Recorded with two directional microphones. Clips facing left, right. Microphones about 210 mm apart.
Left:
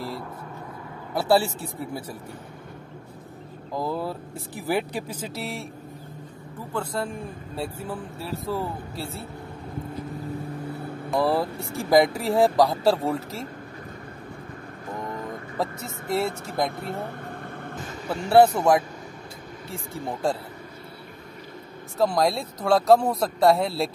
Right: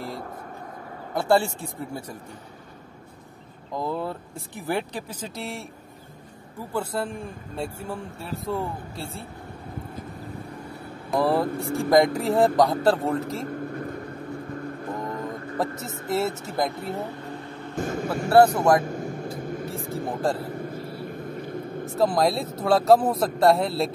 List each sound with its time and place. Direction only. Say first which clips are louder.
1.1 s a man's voice: even; 5° left (ahead or behind)
3.7 s a man's voice: even; 5° left (ahead or behind)
6.7 s a man's voice: right 1 dB; 5° right (ahead or behind)
11.1 s a man's voice: right 1 dB; centre (ahead or behind)
15.5 s a man's voice: right 1 dB; centre (ahead or behind)
16.7 s vehicle: right 1 dB; 55° left (ahead or behind)
17.7 s speech: right 6 dB; 50° right (ahead or behind)
18.3 s a man's voice: even; centre (ahead or behind)
18.8 s vehicle: right 5 dB; 50° right (ahead or behind)
21.9 s a man's voice: even; centre (ahead or behind)